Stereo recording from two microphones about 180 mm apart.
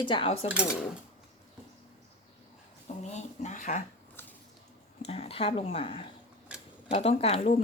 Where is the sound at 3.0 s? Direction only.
40° left (ahead or behind).